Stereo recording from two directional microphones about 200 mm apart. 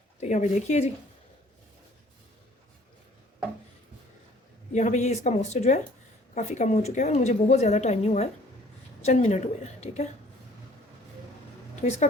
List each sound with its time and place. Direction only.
0.2 s a woman's voice: 35° left (ahead or behind)
4.7 s a woman's voice: 35° left (ahead or behind)
11.8 s a woman's voice: 35° left (ahead or behind)